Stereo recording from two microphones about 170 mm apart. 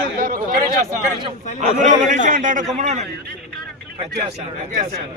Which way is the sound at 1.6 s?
45° right (ahead or behind).